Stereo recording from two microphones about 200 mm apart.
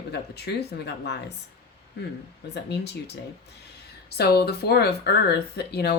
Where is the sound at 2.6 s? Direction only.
55° left (ahead or behind).